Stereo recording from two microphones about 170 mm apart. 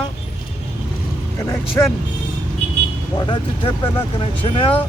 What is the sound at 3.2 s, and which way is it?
Speech, 30° left (ahead or behind).